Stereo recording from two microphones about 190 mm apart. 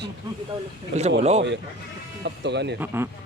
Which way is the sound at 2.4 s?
65° right (ahead or behind).